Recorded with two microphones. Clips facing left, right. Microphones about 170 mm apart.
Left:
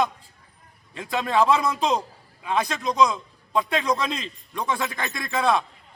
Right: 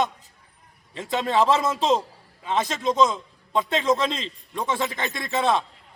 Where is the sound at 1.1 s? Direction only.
25° right (ahead or behind).